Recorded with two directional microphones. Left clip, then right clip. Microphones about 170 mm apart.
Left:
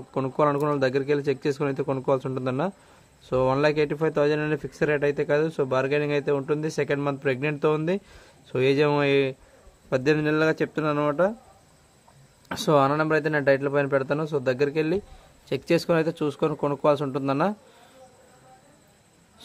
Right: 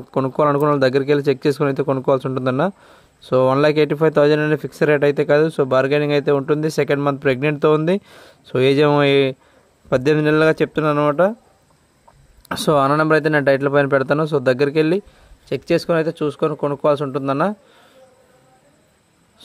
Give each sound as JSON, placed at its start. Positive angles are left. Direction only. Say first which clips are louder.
{"t": 0.1, "sound": "speech", "louder": "right 6 dB", "side_deg": -40}
{"t": 12.4, "sound": "a man's voice", "louder": "right 5 dB", "side_deg": -40}
{"t": 15.4, "sound": "speech", "louder": "right 5 dB", "side_deg": -25}